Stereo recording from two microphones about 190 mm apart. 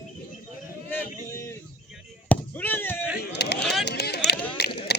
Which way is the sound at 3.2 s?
60° left (ahead or behind).